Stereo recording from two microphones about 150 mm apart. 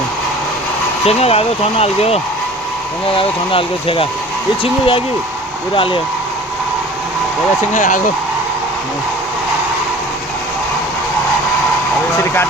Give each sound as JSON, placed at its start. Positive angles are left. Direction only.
{"t": 1.0, "sound": "speech", "side_deg": 40}
{"t": 7.7, "sound": "speech", "side_deg": 60}
{"t": 12.1, "sound": "speech", "side_deg": 15}